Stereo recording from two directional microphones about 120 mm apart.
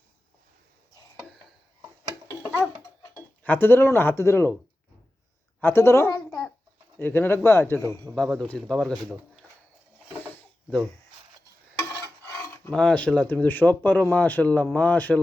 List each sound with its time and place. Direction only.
3.0 s speech: 15° left (ahead or behind)
5.5 s a sound: 20° left (ahead or behind)
7.0 s speech: 15° left (ahead or behind)
8.4 s speech: 5° left (ahead or behind)
10.2 s mechanisms: 5° left (ahead or behind)
12.7 s speech: 5° left (ahead or behind)